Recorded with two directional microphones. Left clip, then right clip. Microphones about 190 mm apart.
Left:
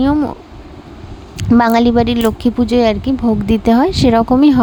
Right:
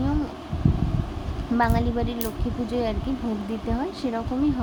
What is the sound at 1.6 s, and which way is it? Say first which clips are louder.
Speech: left 12 dB; 60° left (ahead or behind).